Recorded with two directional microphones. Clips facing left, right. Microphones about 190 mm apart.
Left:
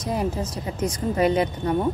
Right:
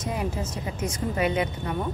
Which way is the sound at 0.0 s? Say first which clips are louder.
Left 4 dB; 35° left (ahead or behind).